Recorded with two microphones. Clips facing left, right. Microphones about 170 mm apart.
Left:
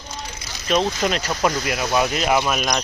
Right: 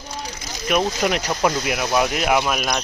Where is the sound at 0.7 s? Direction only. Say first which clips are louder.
Even; 15° right (ahead or behind).